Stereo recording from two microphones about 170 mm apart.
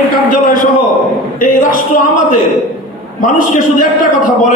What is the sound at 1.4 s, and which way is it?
Speech, 55° left (ahead or behind).